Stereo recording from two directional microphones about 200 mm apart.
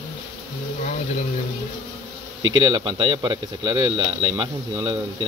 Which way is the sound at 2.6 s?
20° right (ahead or behind).